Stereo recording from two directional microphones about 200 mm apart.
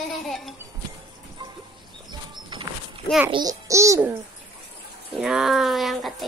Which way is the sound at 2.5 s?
25° right (ahead or behind).